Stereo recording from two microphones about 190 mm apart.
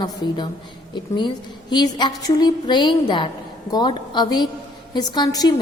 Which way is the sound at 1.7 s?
25° left (ahead or behind).